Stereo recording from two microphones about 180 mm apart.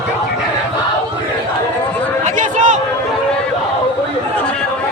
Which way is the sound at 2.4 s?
40° right (ahead or behind).